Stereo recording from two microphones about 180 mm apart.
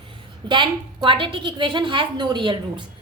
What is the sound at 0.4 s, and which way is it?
A woman's voice, 25° right (ahead or behind).